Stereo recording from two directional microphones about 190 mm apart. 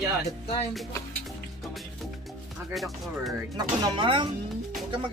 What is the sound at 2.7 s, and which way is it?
Speech, centre (ahead or behind).